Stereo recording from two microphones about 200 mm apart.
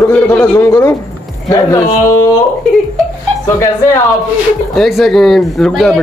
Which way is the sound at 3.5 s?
15° left (ahead or behind).